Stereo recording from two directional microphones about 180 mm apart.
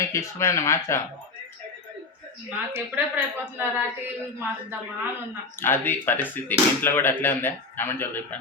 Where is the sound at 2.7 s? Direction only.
10° right (ahead or behind).